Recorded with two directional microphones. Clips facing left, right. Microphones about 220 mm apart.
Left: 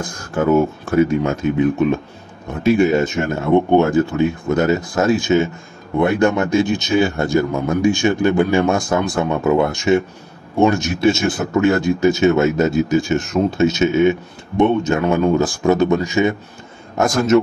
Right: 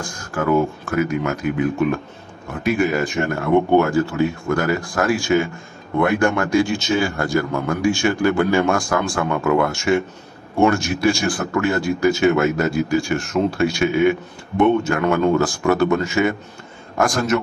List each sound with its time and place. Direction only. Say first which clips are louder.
0.0 s speech: left 4 dB; 25° left (ahead or behind)